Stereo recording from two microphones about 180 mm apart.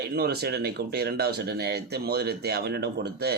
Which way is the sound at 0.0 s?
60° right (ahead or behind).